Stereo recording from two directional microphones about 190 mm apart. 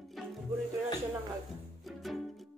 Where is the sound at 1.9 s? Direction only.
Centre (ahead or behind).